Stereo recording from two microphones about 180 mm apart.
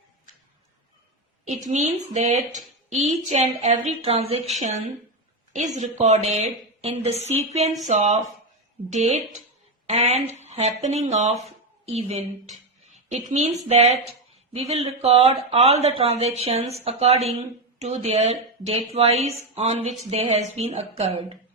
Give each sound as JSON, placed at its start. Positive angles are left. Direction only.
{"t": 1.5, "sound": "a woman's voice", "side_deg": -40}
{"t": 11.4, "sound": "a sound", "side_deg": -35}
{"t": 13.3, "sound": "a woman's voice", "side_deg": -35}